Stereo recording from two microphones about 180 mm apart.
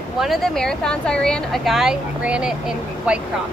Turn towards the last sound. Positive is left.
turn(degrees=-5)  # may be behind; listen again after turning